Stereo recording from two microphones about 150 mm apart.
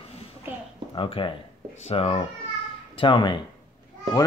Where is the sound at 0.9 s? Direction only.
35° left (ahead or behind).